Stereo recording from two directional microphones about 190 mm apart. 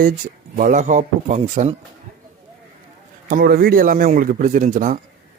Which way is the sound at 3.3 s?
55° right (ahead or behind).